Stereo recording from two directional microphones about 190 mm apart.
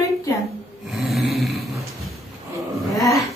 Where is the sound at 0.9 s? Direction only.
Centre (ahead or behind).